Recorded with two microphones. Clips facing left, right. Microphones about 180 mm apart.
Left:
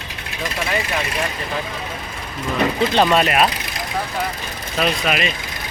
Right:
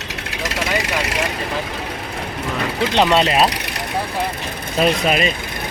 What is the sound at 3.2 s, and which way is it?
Speech, 25° right (ahead or behind).